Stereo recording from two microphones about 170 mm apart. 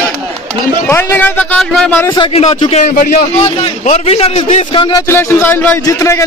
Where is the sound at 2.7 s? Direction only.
50° left (ahead or behind); by 6.2 s 15° left (ahead or behind).